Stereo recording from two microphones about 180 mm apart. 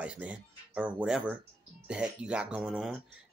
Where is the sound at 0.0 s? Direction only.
5° right (ahead or behind).